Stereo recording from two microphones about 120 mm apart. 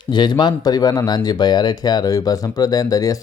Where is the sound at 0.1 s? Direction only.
40° left (ahead or behind).